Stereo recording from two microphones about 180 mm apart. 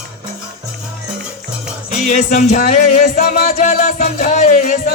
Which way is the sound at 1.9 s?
45° left (ahead or behind).